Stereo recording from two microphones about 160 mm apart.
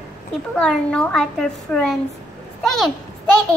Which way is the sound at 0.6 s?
5° left (ahead or behind).